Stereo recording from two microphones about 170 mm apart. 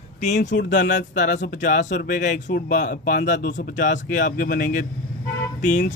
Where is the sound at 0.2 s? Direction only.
45° left (ahead or behind).